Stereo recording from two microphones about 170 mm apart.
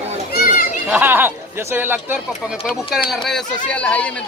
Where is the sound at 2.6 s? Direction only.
Centre (ahead or behind).